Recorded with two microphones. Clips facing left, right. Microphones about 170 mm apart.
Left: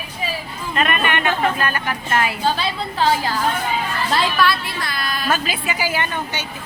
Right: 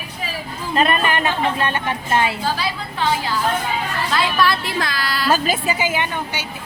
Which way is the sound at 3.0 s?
40° left (ahead or behind).